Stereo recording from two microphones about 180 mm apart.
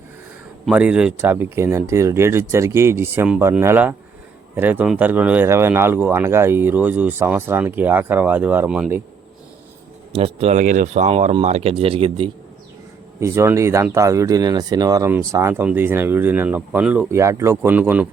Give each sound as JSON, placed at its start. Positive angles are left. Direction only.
{"t": 0.6, "sound": "speech", "side_deg": -5}
{"t": 10.2, "sound": "speech", "side_deg": -35}
{"t": 13.1, "sound": "speech", "side_deg": -15}